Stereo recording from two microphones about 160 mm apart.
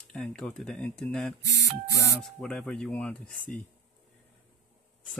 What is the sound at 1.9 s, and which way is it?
Speech, 20° left (ahead or behind).